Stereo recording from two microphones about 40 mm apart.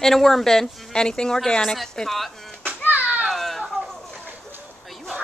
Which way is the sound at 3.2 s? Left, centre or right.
Centre.